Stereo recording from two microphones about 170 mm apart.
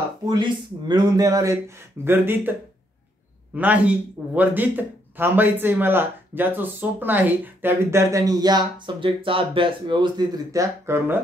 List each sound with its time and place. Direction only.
0.2 s speech: 25° right (ahead or behind)
3.5 s speech: 10° right (ahead or behind)